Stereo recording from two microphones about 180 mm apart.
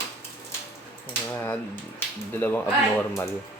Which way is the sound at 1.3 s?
10° left (ahead or behind).